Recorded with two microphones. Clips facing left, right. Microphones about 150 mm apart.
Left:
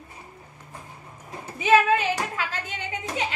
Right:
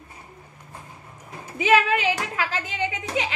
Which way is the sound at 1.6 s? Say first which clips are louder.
Left 1 dB; 90° right.